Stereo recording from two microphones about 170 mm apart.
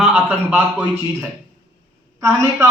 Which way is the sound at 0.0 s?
10° right (ahead or behind).